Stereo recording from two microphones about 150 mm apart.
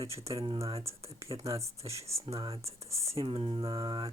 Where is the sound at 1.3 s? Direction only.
40° right (ahead or behind).